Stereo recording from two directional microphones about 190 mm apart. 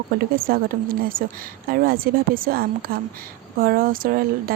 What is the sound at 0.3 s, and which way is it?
Speech, 50° right (ahead or behind).